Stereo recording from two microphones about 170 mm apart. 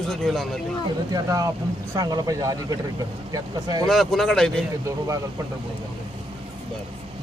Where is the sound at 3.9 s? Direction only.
Centre (ahead or behind).